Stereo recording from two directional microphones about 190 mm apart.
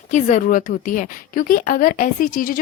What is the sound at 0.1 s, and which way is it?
A woman's voice, 40° left (ahead or behind).